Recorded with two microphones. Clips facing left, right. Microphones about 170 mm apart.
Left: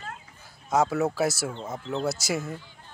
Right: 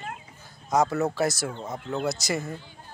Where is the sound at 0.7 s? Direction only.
5° left (ahead or behind).